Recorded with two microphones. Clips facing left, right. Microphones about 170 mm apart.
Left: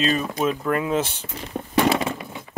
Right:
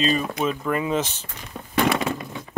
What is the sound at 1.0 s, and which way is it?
Speech, 10° left (ahead or behind).